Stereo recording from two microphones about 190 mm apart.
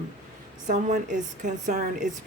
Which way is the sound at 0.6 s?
40° right (ahead or behind).